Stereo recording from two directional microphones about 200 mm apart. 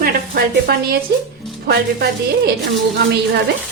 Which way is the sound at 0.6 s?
50° right (ahead or behind).